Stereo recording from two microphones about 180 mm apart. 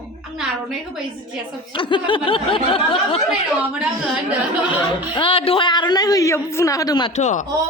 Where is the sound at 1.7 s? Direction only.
25° left (ahead or behind).